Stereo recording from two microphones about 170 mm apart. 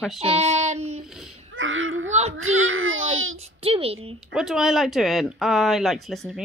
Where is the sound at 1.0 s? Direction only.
5° right (ahead or behind).